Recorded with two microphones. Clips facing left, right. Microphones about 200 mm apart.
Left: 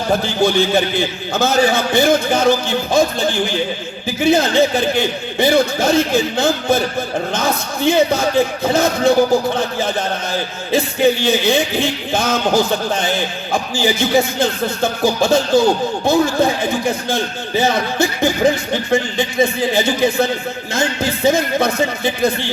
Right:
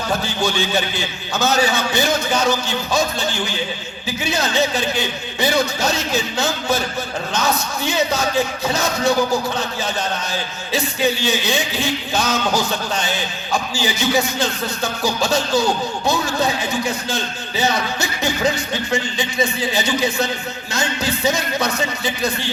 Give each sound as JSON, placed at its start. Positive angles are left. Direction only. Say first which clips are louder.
{"t": 0.1, "sound": "a man's voice", "louder": "left 7 dB", "side_deg": 55}